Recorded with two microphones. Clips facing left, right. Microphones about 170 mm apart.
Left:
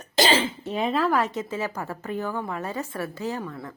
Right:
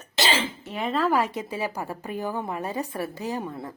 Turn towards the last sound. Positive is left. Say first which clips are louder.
# even
turn(degrees=-20)  # may be behind; listen again after turning